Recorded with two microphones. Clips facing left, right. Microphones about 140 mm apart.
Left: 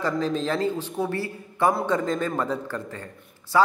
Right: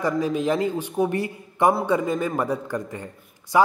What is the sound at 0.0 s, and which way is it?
A man's voice, 15° right (ahead or behind).